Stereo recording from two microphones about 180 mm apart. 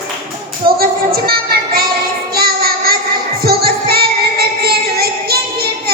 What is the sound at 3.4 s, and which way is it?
Music, 60° right (ahead or behind).